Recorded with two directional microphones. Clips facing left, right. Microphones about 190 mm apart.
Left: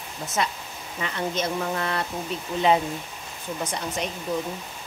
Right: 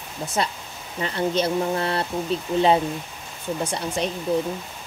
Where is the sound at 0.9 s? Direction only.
35° right (ahead or behind).